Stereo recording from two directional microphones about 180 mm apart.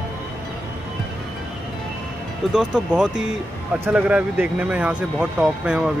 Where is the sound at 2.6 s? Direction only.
5° right (ahead or behind).